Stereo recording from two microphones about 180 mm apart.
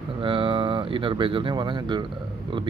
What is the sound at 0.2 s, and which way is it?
Speech, 30° right (ahead or behind).